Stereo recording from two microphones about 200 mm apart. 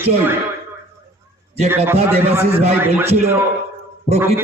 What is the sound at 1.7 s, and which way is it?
A man's voice, 10° right (ahead or behind).